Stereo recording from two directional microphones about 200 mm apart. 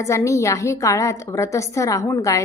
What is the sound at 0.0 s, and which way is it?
A woman's voice, 15° left (ahead or behind).